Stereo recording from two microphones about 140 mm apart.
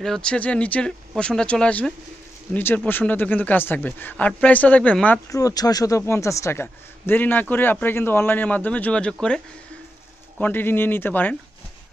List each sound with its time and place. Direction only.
0.0 s a man's voice: 5° left (ahead or behind)
5.3 s a man's voice: 25° left (ahead or behind); by 9.4 s 5° left (ahead or behind)
10.4 s a man's voice: 15° left (ahead or behind)